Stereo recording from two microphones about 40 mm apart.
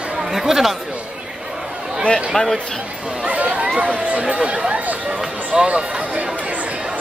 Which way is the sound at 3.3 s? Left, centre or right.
Right.